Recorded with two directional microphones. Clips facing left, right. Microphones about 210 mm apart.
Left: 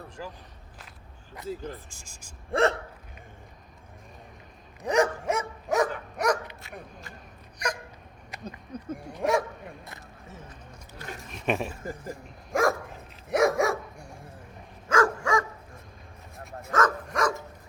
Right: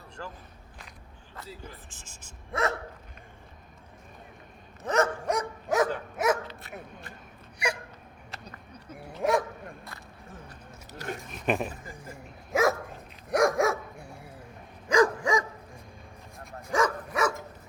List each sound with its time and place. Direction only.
0.2 s speech: 10° left (ahead or behind)
1.4 s speech: 15° left (ahead or behind)
2.5 s speech: 30° left (ahead or behind)
4.8 s dog: 10° left (ahead or behind); by 6.4 s 5° right (ahead or behind)
7.6 s a sound: 10° right (ahead or behind)
9.2 s bow-wow: centre (ahead or behind)
10.5 s a sound: 70° right (ahead or behind)
11.2 s speech: centre (ahead or behind)
13.3 s dog: centre (ahead or behind)
14.8 s dog: 15° right (ahead or behind)
16.4 s bow-wow: centre (ahead or behind)
16.7 s dog: 10° right (ahead or behind)